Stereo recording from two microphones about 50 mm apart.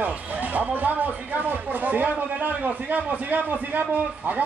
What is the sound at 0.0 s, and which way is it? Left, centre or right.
Speech, right.